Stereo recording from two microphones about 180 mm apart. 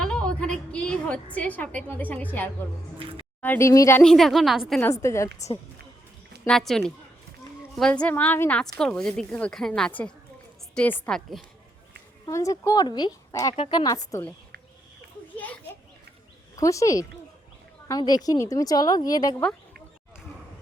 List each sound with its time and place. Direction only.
0.0 s a woman's voice: 5° left (ahead or behind)
3.0 s speech: 30° right (ahead or behind)
3.4 s a woman's voice: 15° left (ahead or behind)
4.0 s a woman's voice: centre (ahead or behind)
4.8 s a woman's voice: 15° left (ahead or behind)
6.4 s a woman's voice: 5° left (ahead or behind)
12.2 s a woman's voice: 20° left (ahead or behind)
15.4 s children playing: 10° left (ahead or behind)
16.6 s a woman's voice: 15° left (ahead or behind)